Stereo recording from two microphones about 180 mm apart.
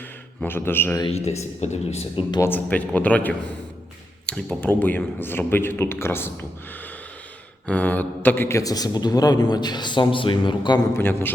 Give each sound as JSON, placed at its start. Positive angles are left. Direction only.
{"t": 0.4, "sound": "a man's voice", "side_deg": 10}
{"t": 1.0, "sound": "speech", "side_deg": 35}
{"t": 2.3, "sound": "a man's voice", "side_deg": 15}
{"t": 7.7, "sound": "a man's voice", "side_deg": 10}
{"t": 10.9, "sound": "a man's voice", "side_deg": 10}